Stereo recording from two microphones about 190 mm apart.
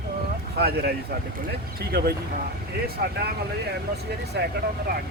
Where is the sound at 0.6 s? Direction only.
55° right (ahead or behind).